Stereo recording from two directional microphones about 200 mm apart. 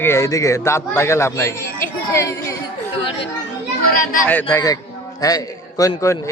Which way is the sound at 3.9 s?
45° left (ahead or behind).